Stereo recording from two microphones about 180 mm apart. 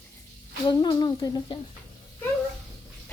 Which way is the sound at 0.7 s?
25° left (ahead or behind).